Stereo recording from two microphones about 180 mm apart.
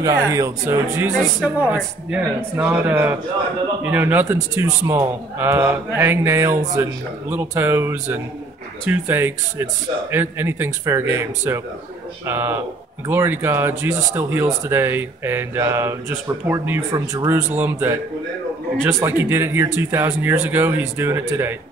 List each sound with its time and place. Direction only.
0.0 s a man's voice: 15° right (ahead or behind)